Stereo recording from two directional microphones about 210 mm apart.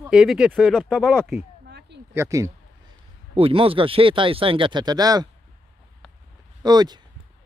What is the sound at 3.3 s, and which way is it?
Speech, 25° right (ahead or behind).